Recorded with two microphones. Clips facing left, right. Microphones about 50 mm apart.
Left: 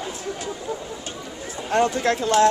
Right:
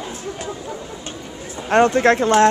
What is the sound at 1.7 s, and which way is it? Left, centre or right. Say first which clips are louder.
Speech: right 6 dB; right.